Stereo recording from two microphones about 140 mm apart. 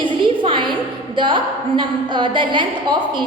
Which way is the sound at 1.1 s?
35° right (ahead or behind).